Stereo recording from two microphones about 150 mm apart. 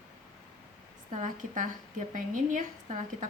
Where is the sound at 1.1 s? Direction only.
60° right (ahead or behind).